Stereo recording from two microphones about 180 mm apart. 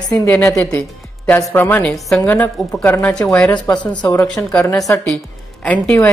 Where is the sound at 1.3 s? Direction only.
15° left (ahead or behind).